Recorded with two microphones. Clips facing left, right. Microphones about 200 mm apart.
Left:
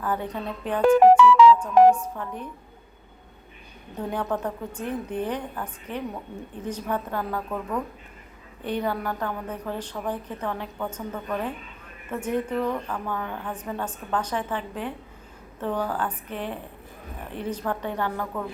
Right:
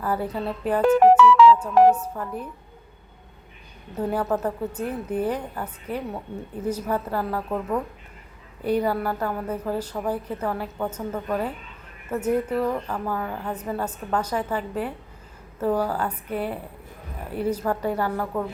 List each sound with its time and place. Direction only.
0.2 s speech: 35° right (ahead or behind)
0.4 s a woman's voice: 5° right (ahead or behind)
0.9 s speech: 15° left (ahead or behind)
1.8 s a woman's voice: 5° right (ahead or behind)
4.1 s a woman's voice: 5° right (ahead or behind)